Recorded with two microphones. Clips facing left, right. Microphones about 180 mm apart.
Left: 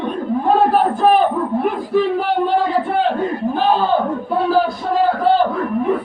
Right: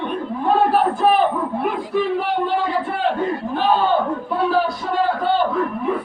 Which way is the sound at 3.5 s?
Centre (ahead or behind).